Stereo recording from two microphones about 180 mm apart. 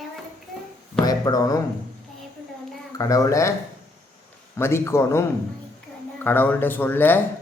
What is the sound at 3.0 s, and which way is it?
Speech, 20° left (ahead or behind).